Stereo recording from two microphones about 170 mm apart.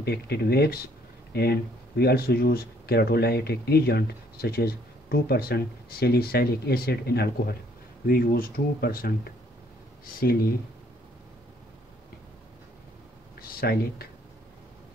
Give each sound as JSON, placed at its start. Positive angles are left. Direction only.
{"t": 0.0, "sound": "speech", "side_deg": 70}
{"t": 13.4, "sound": "speech", "side_deg": 65}